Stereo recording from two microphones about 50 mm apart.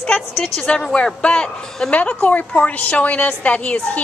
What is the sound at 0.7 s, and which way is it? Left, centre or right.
A woman's voice, centre.